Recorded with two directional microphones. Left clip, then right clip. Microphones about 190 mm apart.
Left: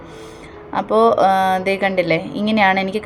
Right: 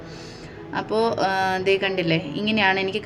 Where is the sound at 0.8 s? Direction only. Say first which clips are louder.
Left 8 dB; 15° left (ahead or behind).